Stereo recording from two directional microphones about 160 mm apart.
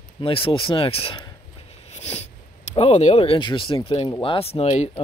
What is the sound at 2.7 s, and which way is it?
Speech, 40° left (ahead or behind).